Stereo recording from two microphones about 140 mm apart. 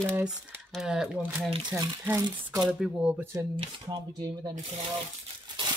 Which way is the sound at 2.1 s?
25° right (ahead or behind).